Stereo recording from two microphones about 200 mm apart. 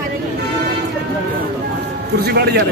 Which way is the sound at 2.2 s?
55° right (ahead or behind).